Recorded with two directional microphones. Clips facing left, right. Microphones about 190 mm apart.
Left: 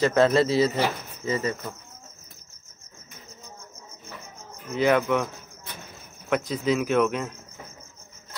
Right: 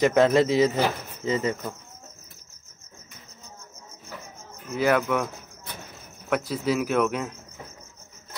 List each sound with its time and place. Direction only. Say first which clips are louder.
0.0 s speech: right 1 dB; 15° right (ahead or behind)
4.7 s speech: left 1 dB; 5° right (ahead or behind)
6.3 s speech: left 1 dB; 5° right (ahead or behind)